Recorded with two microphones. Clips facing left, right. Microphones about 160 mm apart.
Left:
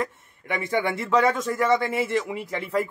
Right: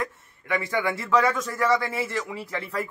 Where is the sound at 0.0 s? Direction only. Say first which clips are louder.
Left 2 dB; 20° left (ahead or behind).